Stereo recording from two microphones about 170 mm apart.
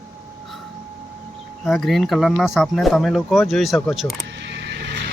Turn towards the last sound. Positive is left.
turn(degrees=-90)